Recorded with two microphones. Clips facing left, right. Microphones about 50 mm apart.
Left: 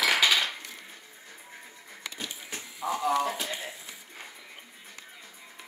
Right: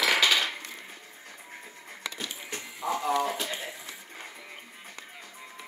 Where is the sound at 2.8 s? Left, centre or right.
Left.